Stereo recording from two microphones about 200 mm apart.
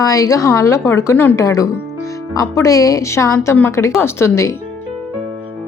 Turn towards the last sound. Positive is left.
turn(degrees=15)  # may be behind; listen again after turning